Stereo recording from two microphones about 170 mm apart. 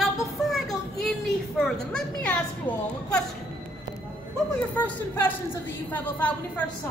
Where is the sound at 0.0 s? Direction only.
Centre (ahead or behind).